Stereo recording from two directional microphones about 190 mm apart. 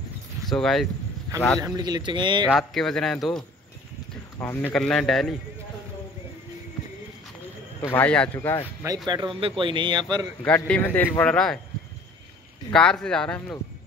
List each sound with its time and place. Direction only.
0.5 s speech: centre (ahead or behind)
1.6 s speech: 20° right (ahead or behind)
2.4 s speech: centre (ahead or behind)
7.9 s speech: 5° left (ahead or behind)
8.8 s speech: 20° right (ahead or behind)
10.4 s speech: 10° left (ahead or behind)
12.7 s speech: 5° left (ahead or behind)